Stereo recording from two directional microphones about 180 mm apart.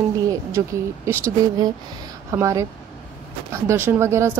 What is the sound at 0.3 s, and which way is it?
Speech, 15° right (ahead or behind).